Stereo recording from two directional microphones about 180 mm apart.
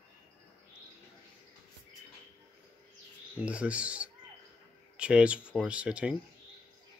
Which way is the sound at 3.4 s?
5° right (ahead or behind).